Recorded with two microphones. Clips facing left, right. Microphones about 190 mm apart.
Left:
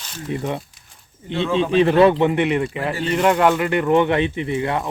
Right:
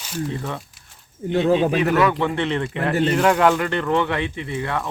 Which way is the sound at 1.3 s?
45° right (ahead or behind).